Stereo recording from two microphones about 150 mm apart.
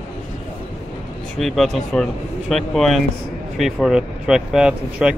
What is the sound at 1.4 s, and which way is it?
Speech, centre (ahead or behind).